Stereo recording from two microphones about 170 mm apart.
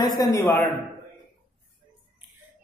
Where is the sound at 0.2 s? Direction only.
15° left (ahead or behind).